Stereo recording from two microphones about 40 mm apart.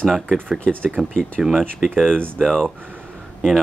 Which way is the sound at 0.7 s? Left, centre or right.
Centre.